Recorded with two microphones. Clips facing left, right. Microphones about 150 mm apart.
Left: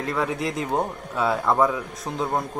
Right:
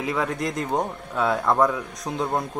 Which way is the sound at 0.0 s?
Centre (ahead or behind).